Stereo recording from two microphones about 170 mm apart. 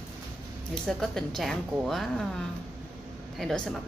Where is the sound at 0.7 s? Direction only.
Centre (ahead or behind).